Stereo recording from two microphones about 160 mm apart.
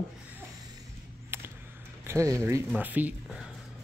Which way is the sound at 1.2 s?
15° right (ahead or behind).